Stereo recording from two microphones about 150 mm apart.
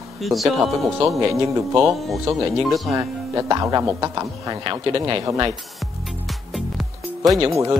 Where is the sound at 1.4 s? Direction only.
25° right (ahead or behind).